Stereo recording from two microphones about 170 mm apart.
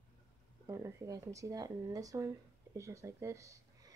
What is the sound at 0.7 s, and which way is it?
A woman's voice, 15° right (ahead or behind).